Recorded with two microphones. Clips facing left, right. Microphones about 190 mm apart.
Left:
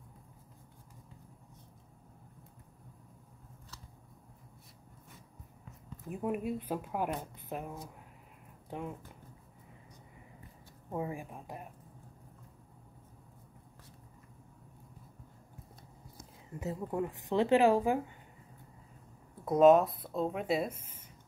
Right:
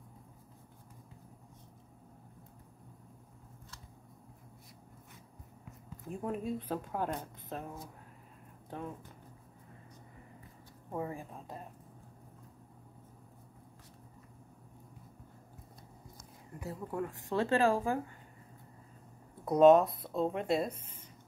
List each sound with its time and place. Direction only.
6.0 s a woman's voice: 10° left (ahead or behind)
8.6 s speech: 15° left (ahead or behind)
10.9 s a woman's voice: 10° left (ahead or behind)
16.5 s a woman's voice: 20° left (ahead or behind)
19.4 s speech: centre (ahead or behind)